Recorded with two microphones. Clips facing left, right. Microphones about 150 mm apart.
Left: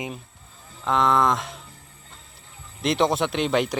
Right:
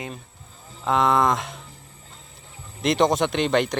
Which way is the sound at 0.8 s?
Centre (ahead or behind).